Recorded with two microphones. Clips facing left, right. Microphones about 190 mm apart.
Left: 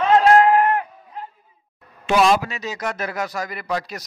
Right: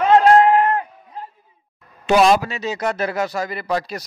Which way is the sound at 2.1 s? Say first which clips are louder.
Right 3 dB; 40° right (ahead or behind).